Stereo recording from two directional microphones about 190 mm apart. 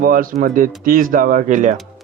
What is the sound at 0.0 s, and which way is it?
Speech, 45° right (ahead or behind).